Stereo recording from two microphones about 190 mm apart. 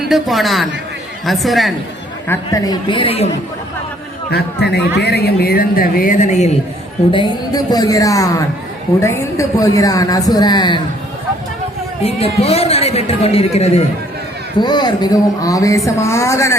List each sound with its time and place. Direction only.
0.1 s a man's voice: centre (ahead or behind)
2.2 s speech: 15° left (ahead or behind)
4.3 s a man's voice: 60° left (ahead or behind); by 6.5 s 40° left (ahead or behind)
7.1 s speech: 25° left (ahead or behind)
12.0 s a man's voice: 30° left (ahead or behind)
14.6 s speech: 25° left (ahead or behind)